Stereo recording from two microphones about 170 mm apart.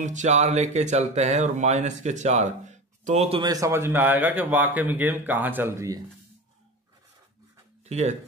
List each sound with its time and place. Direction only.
0.0 s speech: 45° right (ahead or behind)
3.4 s a man's voice: 20° right (ahead or behind)
7.8 s speech: 40° right (ahead or behind)